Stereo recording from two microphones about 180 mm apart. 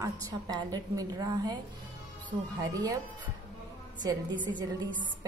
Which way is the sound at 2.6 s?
20° right (ahead or behind).